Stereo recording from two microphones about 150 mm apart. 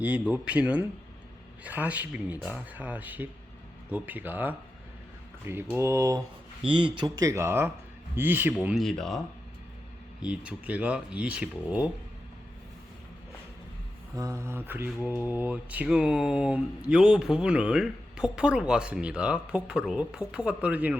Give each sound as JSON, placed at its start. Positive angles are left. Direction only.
{"t": 0.0, "sound": "mantra", "side_deg": -10}
{"t": 5.7, "sound": "speech", "side_deg": -20}
{"t": 6.6, "sound": "speech", "side_deg": -35}
{"t": 7.2, "sound": "mantra", "side_deg": -20}
{"t": 8.6, "sound": "speech", "side_deg": 0}
{"t": 10.2, "sound": "mantra", "side_deg": -5}
{"t": 14.2, "sound": "mantra", "side_deg": -20}